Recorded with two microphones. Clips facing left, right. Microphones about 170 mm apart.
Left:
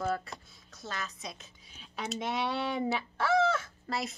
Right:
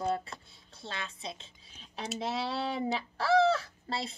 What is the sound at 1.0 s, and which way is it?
Speech, 30° right (ahead or behind).